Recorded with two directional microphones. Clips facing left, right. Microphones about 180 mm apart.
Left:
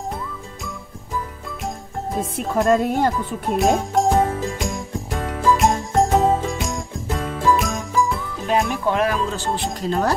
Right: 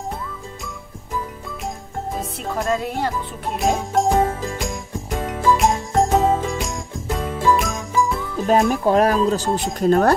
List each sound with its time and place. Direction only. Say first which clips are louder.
2.7 s speech: left 5 dB; 45° left (ahead or behind)
3.4 s jingle bell: left 3 dB; centre (ahead or behind)
8.5 s speech: right 4 dB; 40° right (ahead or behind)
9.8 s speech: right 7 dB; 55° right (ahead or behind)